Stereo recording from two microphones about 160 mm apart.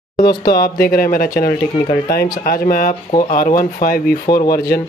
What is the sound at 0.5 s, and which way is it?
Speech, 70° left (ahead or behind).